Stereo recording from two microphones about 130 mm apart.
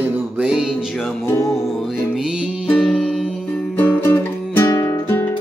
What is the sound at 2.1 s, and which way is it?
Music, 5° right (ahead or behind).